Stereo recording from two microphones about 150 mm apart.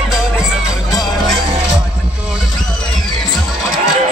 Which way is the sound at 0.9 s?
25° left (ahead or behind).